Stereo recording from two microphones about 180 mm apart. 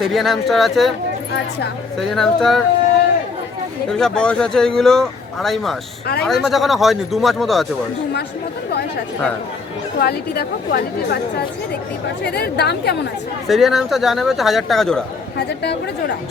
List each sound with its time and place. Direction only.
0.0 s speech: centre (ahead or behind)
2.0 s speech: centre (ahead or behind)
3.8 s speech: 5° left (ahead or behind)
10.0 s a woman's voice: 60° left (ahead or behind)
13.5 s speech: centre (ahead or behind)
15.4 s a woman's voice: 70° left (ahead or behind)